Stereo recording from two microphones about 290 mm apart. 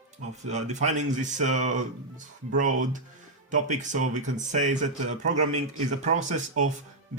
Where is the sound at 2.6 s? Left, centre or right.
Right.